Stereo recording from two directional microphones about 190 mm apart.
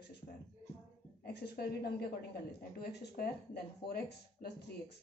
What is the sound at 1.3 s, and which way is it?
Speech, 60° left (ahead or behind).